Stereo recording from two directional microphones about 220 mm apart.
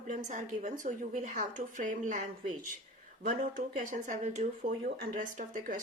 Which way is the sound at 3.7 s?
35° right (ahead or behind).